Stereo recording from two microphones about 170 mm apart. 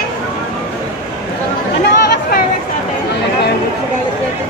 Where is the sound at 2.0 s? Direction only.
65° left (ahead or behind).